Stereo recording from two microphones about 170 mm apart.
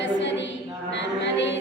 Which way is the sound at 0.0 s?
90° left.